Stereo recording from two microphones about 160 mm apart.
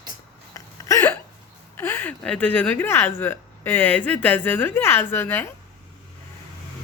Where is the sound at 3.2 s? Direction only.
15° left (ahead or behind).